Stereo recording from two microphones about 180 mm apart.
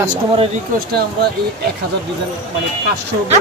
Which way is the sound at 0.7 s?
60° right (ahead or behind).